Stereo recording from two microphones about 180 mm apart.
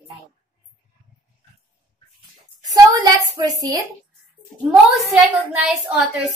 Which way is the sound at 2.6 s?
20° right (ahead or behind).